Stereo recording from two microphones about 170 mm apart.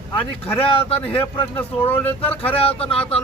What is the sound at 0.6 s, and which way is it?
Speech, 35° left (ahead or behind).